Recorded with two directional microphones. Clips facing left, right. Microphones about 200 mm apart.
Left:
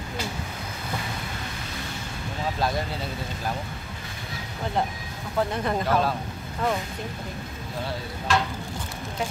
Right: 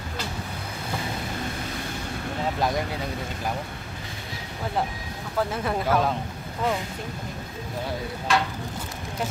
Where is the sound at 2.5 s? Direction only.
15° right (ahead or behind).